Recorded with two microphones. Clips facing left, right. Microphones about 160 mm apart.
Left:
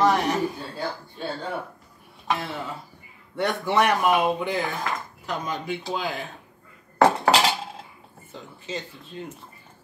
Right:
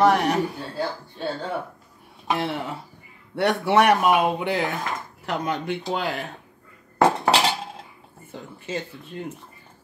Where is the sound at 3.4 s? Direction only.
70° right (ahead or behind).